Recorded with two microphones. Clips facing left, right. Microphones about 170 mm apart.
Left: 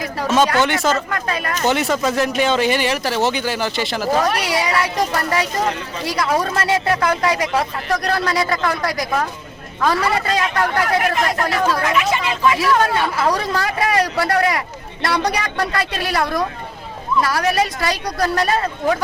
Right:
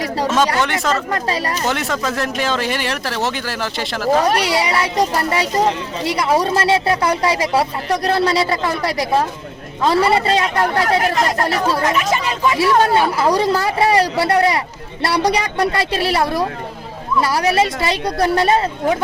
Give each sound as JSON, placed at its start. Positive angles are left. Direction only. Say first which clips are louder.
{"t": 0.3, "sound": "speech", "louder": "left 3 dB", "side_deg": 0}
{"t": 1.1, "sound": "speech", "louder": "right 3 dB", "side_deg": -35}
{"t": 1.6, "sound": "speech", "louder": "left 6 dB", "side_deg": 0}
{"t": 4.3, "sound": "speech", "louder": "right 3 dB", "side_deg": -30}
{"t": 11.8, "sound": "speech", "louder": "right 1 dB", "side_deg": -40}
{"t": 12.6, "sound": "speech", "louder": "right 3 dB", "side_deg": -30}